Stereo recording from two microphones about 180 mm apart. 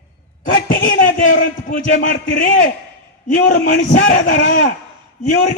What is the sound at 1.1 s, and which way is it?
A man's voice, 50° left (ahead or behind).